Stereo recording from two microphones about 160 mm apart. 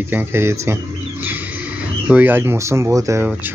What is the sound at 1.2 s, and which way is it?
Vehicle, 10° right (ahead or behind).